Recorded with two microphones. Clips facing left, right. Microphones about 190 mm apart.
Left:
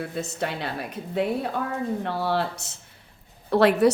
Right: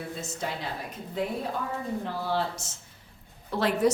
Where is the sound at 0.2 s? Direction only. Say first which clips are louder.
Left 7 dB; 65° left (ahead or behind).